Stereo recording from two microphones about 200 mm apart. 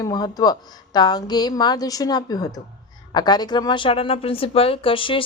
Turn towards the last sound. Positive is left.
turn(degrees=25)  # may be behind; listen again after turning